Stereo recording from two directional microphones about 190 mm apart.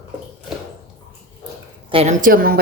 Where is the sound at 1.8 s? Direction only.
30° right (ahead or behind).